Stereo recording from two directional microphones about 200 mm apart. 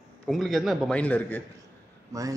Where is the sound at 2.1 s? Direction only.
15° right (ahead or behind).